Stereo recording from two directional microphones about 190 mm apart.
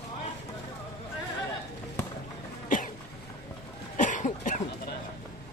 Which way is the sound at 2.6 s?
45° left (ahead or behind).